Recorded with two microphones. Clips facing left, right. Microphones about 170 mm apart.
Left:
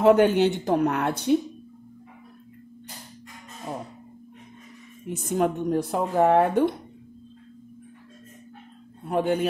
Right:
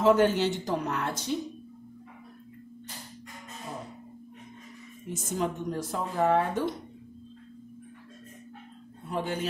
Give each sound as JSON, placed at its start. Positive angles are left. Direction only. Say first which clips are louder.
{"t": 0.0, "sound": "speech", "louder": "left 5 dB", "side_deg": 60}
{"t": 5.1, "sound": "speech", "louder": "left 7 dB", "side_deg": 60}
{"t": 9.1, "sound": "speech", "louder": "left 8 dB", "side_deg": 55}